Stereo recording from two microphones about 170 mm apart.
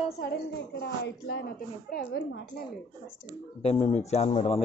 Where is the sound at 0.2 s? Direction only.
80° left.